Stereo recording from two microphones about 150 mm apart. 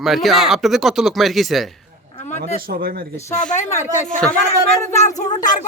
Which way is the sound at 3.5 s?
55° left (ahead or behind).